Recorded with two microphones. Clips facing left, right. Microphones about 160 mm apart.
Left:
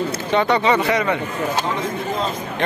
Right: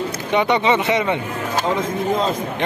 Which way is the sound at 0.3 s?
15° right (ahead or behind).